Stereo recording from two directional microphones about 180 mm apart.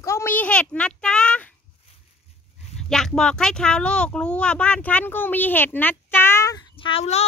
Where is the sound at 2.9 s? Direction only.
Centre (ahead or behind).